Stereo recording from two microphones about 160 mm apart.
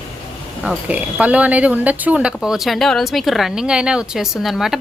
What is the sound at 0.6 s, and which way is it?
A woman's voice, 5° right (ahead or behind).